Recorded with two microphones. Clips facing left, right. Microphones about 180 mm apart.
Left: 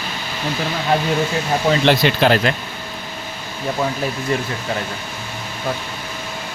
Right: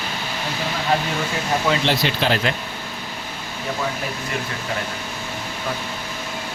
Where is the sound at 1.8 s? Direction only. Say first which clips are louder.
Left 6 dB; 60° left (ahead or behind).